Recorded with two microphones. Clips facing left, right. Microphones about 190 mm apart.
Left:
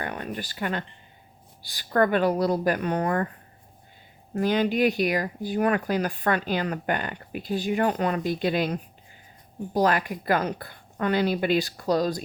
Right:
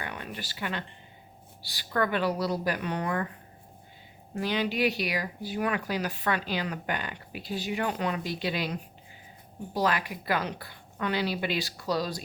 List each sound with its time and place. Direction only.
0.0 s speech: 45° left (ahead or behind)
4.4 s speech: 45° left (ahead or behind)